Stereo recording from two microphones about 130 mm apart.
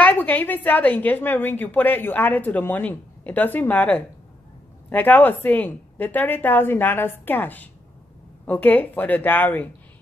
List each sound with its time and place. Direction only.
0.0 s a woman's voice: 10° left (ahead or behind)